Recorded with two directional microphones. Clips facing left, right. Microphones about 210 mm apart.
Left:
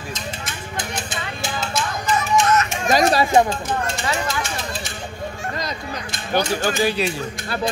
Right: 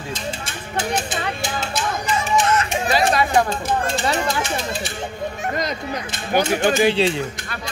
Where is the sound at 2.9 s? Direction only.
40° left (ahead or behind).